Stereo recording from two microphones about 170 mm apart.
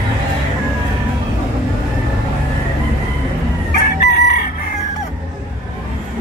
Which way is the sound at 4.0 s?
75° left (ahead or behind).